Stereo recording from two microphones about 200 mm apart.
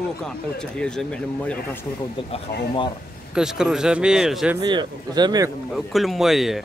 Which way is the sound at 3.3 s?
5° right (ahead or behind).